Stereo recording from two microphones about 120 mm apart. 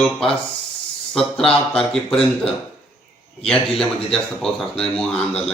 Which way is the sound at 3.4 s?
5° left (ahead or behind).